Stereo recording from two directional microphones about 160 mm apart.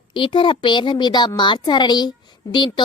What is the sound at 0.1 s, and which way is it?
Speech, 30° left (ahead or behind).